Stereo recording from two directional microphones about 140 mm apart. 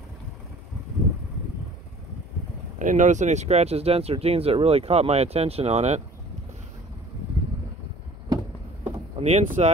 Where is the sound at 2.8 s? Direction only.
65° right (ahead or behind).